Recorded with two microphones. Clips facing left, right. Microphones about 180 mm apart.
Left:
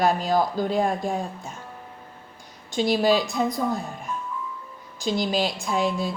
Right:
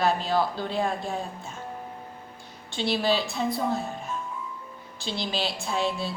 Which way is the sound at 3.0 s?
45° left (ahead or behind).